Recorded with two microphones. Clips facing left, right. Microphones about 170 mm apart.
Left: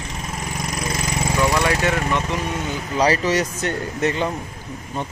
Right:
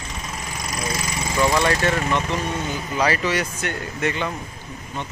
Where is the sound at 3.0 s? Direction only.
35° left (ahead or behind).